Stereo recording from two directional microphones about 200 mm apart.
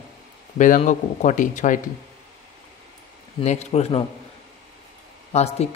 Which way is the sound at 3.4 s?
35° left (ahead or behind).